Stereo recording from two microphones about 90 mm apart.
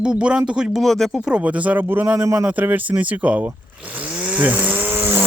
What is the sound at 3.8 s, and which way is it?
Chainsaw, 15° right (ahead or behind).